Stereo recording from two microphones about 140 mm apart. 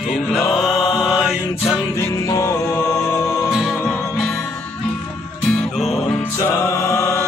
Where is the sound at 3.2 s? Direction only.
Centre (ahead or behind).